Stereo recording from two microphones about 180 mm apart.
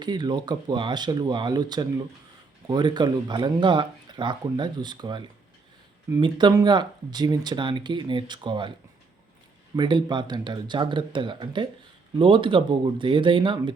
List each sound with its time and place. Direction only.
0.0 s speech: 25° right (ahead or behind)
9.7 s speech: 25° right (ahead or behind)